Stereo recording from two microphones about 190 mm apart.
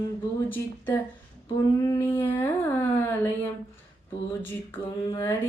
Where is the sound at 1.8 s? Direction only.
20° left (ahead or behind).